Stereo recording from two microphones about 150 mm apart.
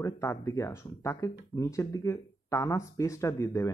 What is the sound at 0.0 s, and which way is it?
Speech, 20° left (ahead or behind).